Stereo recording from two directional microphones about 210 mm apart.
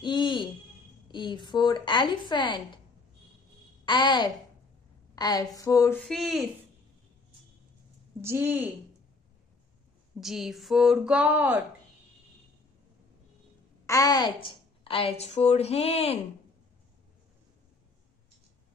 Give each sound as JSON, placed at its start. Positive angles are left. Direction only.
{"t": 0.0, "sound": "music", "side_deg": 20}
{"t": 1.0, "sound": "a woman's voice", "side_deg": 20}
{"t": 3.8, "sound": "a woman's voice", "side_deg": 20}
{"t": 8.2, "sound": "a woman's voice", "side_deg": -10}
{"t": 10.2, "sound": "speech", "side_deg": 0}
{"t": 13.8, "sound": "a woman's voice", "side_deg": 15}